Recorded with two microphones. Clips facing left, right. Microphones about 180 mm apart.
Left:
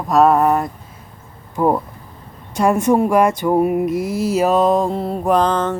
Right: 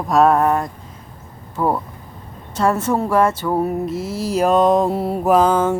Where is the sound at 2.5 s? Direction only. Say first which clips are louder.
Left 3 dB; 15° left (ahead or behind).